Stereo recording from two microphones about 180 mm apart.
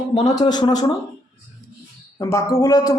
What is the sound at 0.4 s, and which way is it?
Speech, 25° left (ahead or behind).